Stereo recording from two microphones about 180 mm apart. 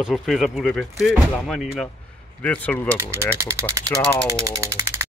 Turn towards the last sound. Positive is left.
turn(degrees=-15)  # may be behind; listen again after turning